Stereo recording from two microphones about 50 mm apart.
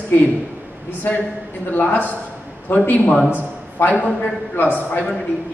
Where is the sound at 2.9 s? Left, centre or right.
Left.